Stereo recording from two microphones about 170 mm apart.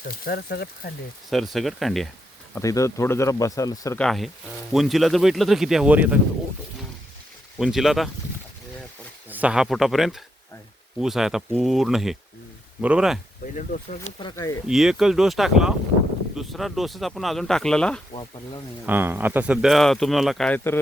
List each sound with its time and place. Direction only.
0.1 s speech: 60° left (ahead or behind)
1.3 s speech: centre (ahead or behind)
2.6 s speech: 20° left (ahead or behind)
3.9 s speech: centre (ahead or behind)
7.6 s speech: centre (ahead or behind)
9.3 s speech: 5° right (ahead or behind)
13.4 s speech: 50° left (ahead or behind)
14.7 s speech: centre (ahead or behind)
18.1 s speech: 25° left (ahead or behind)
18.9 s speech: 10° right (ahead or behind); by 20.8 s 10° left (ahead or behind)